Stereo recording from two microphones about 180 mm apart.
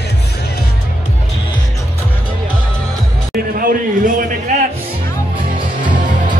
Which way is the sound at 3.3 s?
50° right (ahead or behind).